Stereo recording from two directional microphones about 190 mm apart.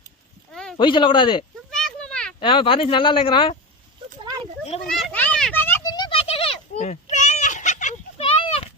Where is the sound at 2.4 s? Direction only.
25° left (ahead or behind).